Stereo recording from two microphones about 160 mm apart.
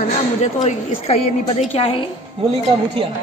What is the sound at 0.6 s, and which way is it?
A woman's voice, 45° left (ahead or behind).